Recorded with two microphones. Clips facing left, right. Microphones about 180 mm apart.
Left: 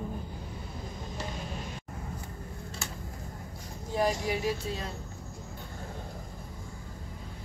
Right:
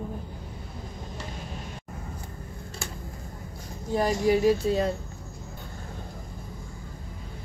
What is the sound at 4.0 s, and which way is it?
Speech, 45° right (ahead or behind).